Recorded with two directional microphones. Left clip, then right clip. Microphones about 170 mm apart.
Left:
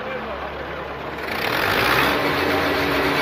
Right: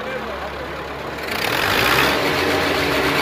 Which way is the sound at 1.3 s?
15° left (ahead or behind).